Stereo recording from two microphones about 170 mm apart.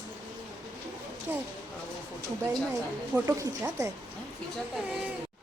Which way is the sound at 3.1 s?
20° right (ahead or behind).